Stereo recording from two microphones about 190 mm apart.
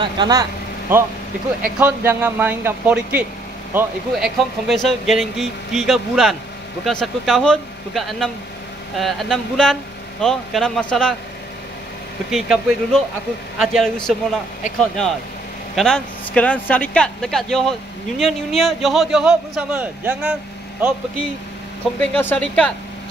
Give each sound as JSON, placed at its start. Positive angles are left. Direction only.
{"t": 0.0, "sound": "speech", "side_deg": -20}
{"t": 12.3, "sound": "speech", "side_deg": 0}
{"t": 22.1, "sound": "speech", "side_deg": 10}